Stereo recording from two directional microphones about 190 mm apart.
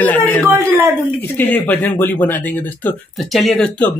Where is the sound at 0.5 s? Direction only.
10° right (ahead or behind).